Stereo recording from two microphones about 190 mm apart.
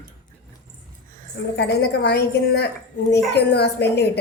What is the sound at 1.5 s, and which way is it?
A woman's voice, 60° left (ahead or behind).